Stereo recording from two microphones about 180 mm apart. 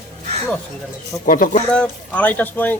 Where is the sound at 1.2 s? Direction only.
50° left (ahead or behind).